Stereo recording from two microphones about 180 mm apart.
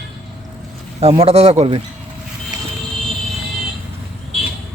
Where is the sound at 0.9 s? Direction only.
35° right (ahead or behind).